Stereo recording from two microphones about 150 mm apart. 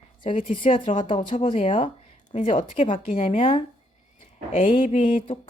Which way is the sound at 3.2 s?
40° left (ahead or behind).